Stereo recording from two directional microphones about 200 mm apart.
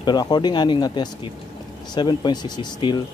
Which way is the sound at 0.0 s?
20° left (ahead or behind).